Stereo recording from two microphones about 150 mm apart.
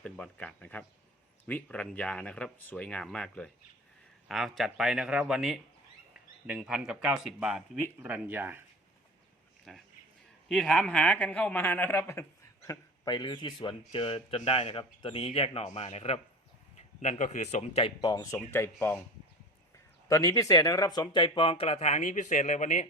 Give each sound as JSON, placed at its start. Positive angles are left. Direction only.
{"t": 0.0, "sound": "speech", "side_deg": 5}
{"t": 9.7, "sound": "speech", "side_deg": 0}
{"t": 13.1, "sound": "speech", "side_deg": 30}
{"t": 17.0, "sound": "a man's voice", "side_deg": 55}
{"t": 18.0, "sound": "speech", "side_deg": 25}
{"t": 20.1, "sound": "speech", "side_deg": 20}